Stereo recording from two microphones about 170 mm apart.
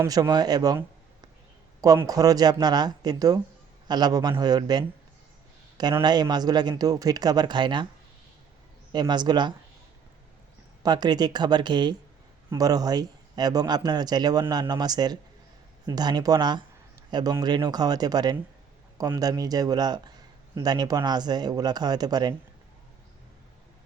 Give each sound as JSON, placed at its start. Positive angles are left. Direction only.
{"t": 0.0, "sound": "speech", "side_deg": -20}
{"t": 8.9, "sound": "speech", "side_deg": -25}
{"t": 10.8, "sound": "speech", "side_deg": -25}